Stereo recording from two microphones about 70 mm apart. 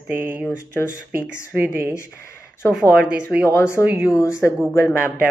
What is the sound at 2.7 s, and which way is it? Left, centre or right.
Speech, centre.